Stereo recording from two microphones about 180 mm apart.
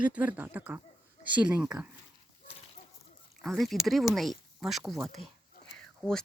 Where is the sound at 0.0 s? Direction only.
10° right (ahead or behind).